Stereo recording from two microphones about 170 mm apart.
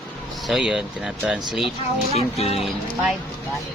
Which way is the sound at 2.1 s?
35° left (ahead or behind).